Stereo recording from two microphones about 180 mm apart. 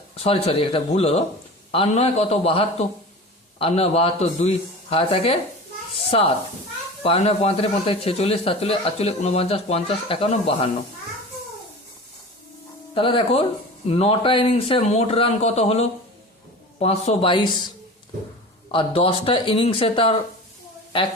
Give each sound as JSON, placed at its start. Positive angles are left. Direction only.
{"t": 0.2, "sound": "speech", "side_deg": 35}
{"t": 12.9, "sound": "speech", "side_deg": 30}
{"t": 18.7, "sound": "speech", "side_deg": 30}